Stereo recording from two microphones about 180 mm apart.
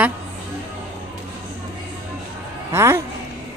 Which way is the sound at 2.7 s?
15° right (ahead or behind).